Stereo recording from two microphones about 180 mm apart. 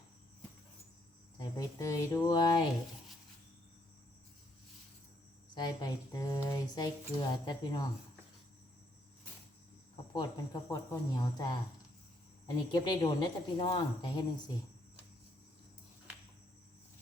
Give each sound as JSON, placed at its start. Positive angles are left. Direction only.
{"t": 1.4, "sound": "speech", "side_deg": 20}
{"t": 5.5, "sound": "speech", "side_deg": 25}
{"t": 10.2, "sound": "speech", "side_deg": 20}
{"t": 12.7, "sound": "speech", "side_deg": 25}